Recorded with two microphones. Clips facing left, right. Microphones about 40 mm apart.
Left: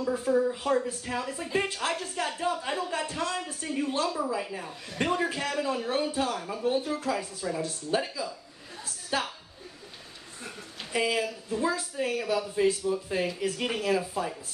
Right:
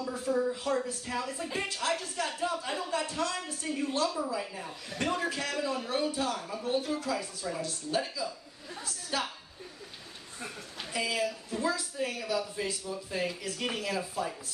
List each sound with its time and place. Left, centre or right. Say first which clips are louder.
0.0 s speech: left 6 dB; left
0.3 s speech: left 3 dB; centre
7.0 s speech: left 3 dB; left
10.9 s speech: left 4 dB; left